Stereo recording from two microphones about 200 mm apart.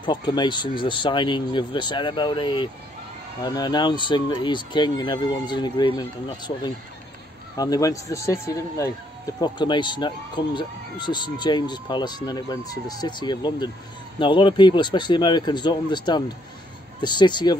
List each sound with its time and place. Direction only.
0.0 s speech: 20° left (ahead or behind)